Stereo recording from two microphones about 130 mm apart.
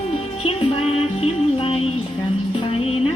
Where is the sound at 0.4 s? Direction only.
45° left (ahead or behind).